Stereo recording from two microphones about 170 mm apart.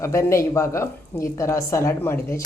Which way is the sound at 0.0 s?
15° left (ahead or behind).